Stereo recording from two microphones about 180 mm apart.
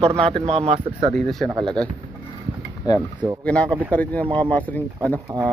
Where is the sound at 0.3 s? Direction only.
30° right (ahead or behind).